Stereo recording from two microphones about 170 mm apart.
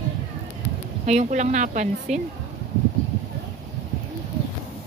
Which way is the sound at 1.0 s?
45° right (ahead or behind).